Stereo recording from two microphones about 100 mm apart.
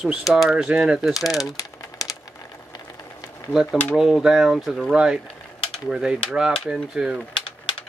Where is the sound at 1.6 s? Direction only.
35° left (ahead or behind).